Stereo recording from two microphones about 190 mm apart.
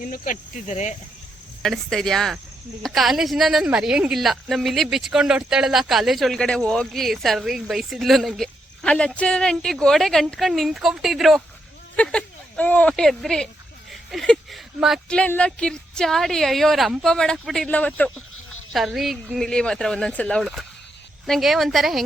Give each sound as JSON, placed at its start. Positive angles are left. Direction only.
{"t": 0.0, "sound": "speech", "side_deg": 45}
{"t": 1.6, "sound": "a woman's voice", "side_deg": 0}